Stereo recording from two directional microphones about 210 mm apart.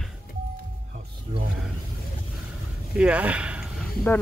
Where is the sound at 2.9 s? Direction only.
5° right (ahead or behind).